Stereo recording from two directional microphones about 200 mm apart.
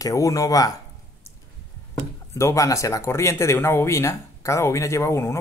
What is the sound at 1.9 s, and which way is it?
Speech, 15° left (ahead or behind).